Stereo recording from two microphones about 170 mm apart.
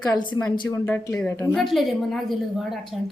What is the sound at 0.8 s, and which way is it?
Speech, 10° left (ahead or behind).